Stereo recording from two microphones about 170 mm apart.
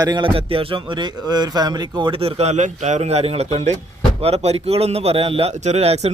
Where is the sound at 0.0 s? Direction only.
25° right (ahead or behind).